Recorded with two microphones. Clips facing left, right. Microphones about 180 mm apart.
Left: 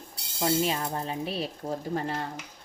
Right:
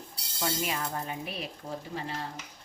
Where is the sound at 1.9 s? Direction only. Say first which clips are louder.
Left 6 dB; 50° left (ahead or behind).